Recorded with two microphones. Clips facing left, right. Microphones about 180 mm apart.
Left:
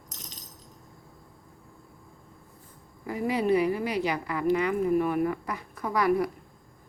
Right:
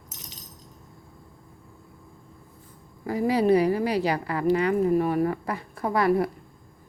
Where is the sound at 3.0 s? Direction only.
35° right (ahead or behind).